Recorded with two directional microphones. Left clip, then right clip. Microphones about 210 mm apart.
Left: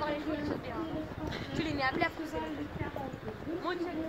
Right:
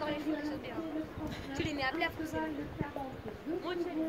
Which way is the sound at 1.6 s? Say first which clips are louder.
Left 3 dB; 20° left (ahead or behind).